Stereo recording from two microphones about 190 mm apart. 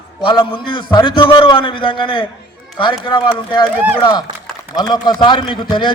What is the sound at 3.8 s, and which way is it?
Speech, 10° right (ahead or behind).